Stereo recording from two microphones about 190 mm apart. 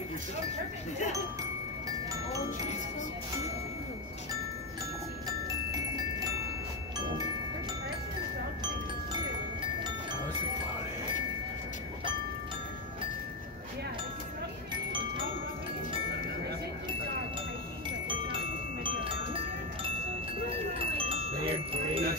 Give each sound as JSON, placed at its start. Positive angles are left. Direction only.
{"t": 17.8, "sound": "music", "side_deg": -25}
{"t": 21.0, "sound": "music", "side_deg": -30}